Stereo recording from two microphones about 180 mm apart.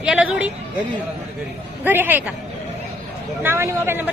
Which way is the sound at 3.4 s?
15° right (ahead or behind).